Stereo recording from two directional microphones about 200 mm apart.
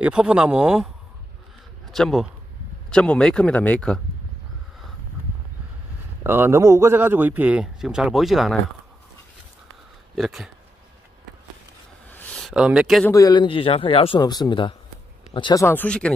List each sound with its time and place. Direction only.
0.0 s speech: 5° right (ahead or behind)
1.9 s speech: centre (ahead or behind)
6.2 s a man's voice: 10° right (ahead or behind)
10.1 s speech: centre (ahead or behind)
12.1 s a sound: 10° left (ahead or behind)
13.1 s speech: 20° left (ahead or behind)